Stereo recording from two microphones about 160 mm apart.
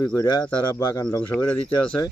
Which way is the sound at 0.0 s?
20° left (ahead or behind).